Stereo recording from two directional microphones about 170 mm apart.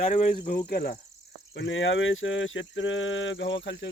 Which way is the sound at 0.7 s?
65° left (ahead or behind).